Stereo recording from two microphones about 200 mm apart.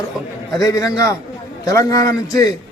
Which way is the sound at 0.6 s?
15° left (ahead or behind).